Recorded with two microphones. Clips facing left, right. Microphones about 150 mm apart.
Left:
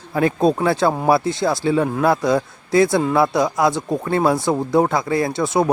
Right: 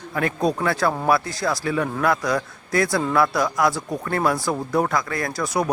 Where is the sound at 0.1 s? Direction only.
25° left (ahead or behind).